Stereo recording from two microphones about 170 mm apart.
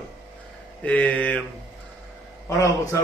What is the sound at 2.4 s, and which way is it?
Speech, 20° left (ahead or behind).